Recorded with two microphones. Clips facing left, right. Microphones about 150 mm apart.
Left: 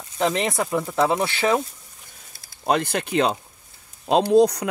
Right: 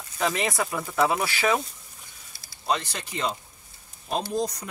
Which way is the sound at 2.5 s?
55° left (ahead or behind).